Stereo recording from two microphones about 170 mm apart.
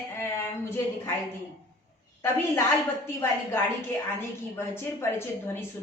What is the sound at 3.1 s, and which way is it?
Speech, 15° left (ahead or behind).